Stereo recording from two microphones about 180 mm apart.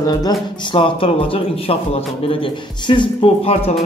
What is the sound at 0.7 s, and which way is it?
A man's voice, 30° left (ahead or behind).